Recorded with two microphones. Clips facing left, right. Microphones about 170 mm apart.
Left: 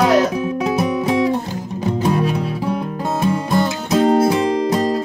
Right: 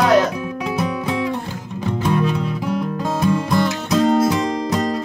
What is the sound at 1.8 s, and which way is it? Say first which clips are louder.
Music: left 1 dB; 40° left (ahead or behind).